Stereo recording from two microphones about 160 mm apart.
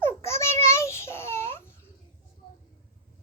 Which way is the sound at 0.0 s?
15° left (ahead or behind).